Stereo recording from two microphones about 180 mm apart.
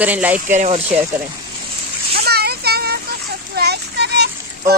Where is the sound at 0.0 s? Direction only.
10° right (ahead or behind).